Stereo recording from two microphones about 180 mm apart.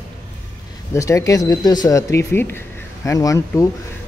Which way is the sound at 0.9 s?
15° left (ahead or behind).